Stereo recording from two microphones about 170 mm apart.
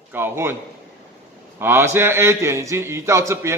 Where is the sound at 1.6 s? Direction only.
15° right (ahead or behind).